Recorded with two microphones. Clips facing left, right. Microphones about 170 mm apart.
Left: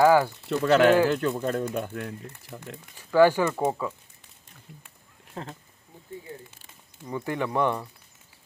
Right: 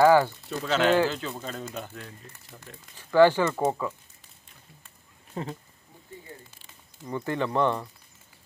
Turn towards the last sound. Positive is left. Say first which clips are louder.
# even
turn(degrees=10)  # may be behind; listen again after turning